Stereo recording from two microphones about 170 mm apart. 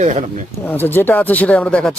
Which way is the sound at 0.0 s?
45° right (ahead or behind).